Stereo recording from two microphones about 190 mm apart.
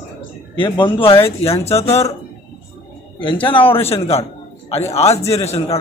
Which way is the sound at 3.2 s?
25° left (ahead or behind).